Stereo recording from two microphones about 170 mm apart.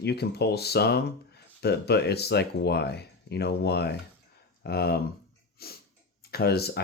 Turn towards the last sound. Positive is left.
turn(degrees=70)  # may be behind; listen again after turning